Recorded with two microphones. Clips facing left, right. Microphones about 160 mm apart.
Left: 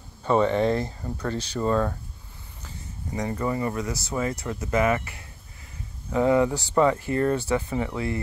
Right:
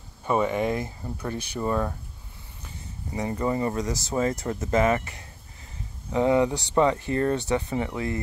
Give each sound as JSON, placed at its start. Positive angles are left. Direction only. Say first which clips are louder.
{"t": 0.2, "sound": "speech", "louder": "left 3 dB", "side_deg": -10}
{"t": 3.2, "sound": "speech", "louder": "right 1 dB", "side_deg": -25}
{"t": 3.7, "sound": "speech", "louder": "right 2 dB", "side_deg": -40}
{"t": 4.6, "sound": "speech", "louder": "right 1 dB", "side_deg": -30}
{"t": 6.1, "sound": "speech", "louder": "left 1 dB", "side_deg": -20}